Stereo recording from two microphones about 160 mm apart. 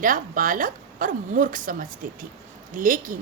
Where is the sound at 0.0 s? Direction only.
60° right (ahead or behind).